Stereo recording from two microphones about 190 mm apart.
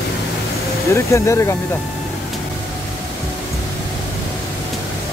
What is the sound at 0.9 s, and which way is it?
Speech, 15° left (ahead or behind).